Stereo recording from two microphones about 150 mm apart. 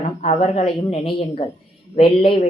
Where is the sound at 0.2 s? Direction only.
50° left (ahead or behind).